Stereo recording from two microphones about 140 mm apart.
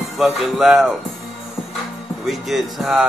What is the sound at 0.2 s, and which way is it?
Speech, centre (ahead or behind).